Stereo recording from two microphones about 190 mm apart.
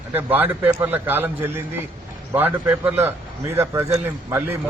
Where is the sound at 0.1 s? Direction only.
10° right (ahead or behind).